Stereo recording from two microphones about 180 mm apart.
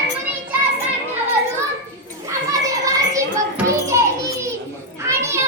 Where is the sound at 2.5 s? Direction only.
20° right (ahead or behind).